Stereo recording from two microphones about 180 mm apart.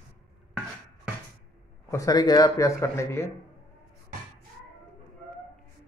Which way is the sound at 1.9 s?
20° left (ahead or behind).